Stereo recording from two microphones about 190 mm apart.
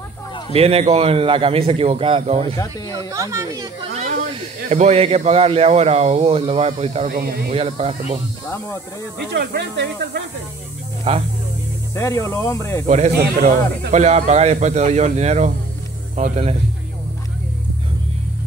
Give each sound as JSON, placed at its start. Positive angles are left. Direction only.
{"t": 0.5, "sound": "a man's voice", "side_deg": -30}
{"t": 3.1, "sound": "speech", "side_deg": -15}
{"t": 3.9, "sound": "hiss", "side_deg": -40}
{"t": 4.6, "sound": "a man's voice", "side_deg": -35}
{"t": 7.1, "sound": "speech", "side_deg": -50}
{"t": 7.5, "sound": "a man's voice", "side_deg": -30}
{"t": 9.3, "sound": "speech", "side_deg": -60}
{"t": 11.1, "sound": "a man's voice", "side_deg": -30}
{"t": 11.9, "sound": "speech", "side_deg": 15}
{"t": 12.8, "sound": "a man's voice", "side_deg": -35}
{"t": 13.2, "sound": "speech", "side_deg": -60}
{"t": 13.9, "sound": "a man's voice", "side_deg": -35}